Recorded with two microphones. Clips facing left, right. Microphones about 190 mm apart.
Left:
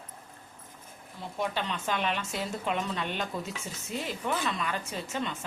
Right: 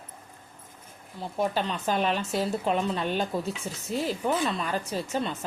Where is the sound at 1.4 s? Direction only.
40° right (ahead or behind).